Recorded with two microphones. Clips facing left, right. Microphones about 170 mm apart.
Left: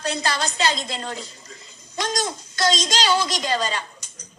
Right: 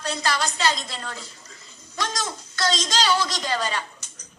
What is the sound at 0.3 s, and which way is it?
A woman's voice, 25° left (ahead or behind).